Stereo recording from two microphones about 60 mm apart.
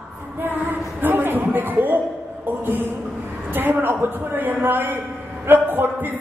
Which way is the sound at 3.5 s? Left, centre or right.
Right.